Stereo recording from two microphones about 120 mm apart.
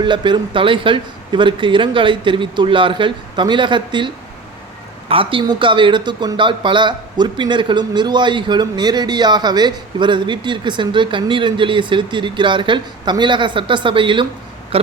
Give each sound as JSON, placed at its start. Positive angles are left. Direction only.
{"t": 0.0, "sound": "a man's voice", "side_deg": -40}